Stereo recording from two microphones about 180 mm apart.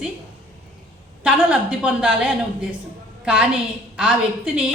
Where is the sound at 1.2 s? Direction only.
5° right (ahead or behind).